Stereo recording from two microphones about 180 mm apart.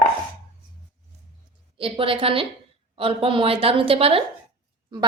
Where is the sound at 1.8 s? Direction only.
30° right (ahead or behind).